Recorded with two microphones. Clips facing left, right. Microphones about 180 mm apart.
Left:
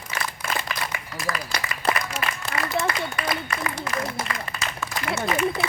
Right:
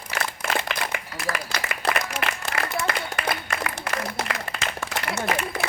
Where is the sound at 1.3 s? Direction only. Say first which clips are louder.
Right 1 dB; 70° right (ahead or behind).